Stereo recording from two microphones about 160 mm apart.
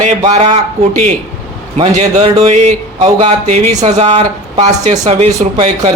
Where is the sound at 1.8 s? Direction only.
40° right (ahead or behind).